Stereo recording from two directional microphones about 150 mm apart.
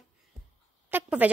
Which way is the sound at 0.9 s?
10° right (ahead or behind).